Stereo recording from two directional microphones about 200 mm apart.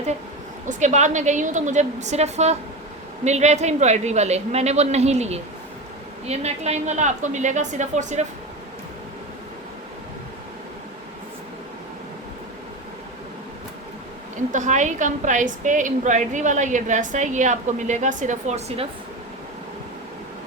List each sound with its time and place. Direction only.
0.7 s a woman's voice: 35° right (ahead or behind)
14.5 s a woman's voice: 35° right (ahead or behind)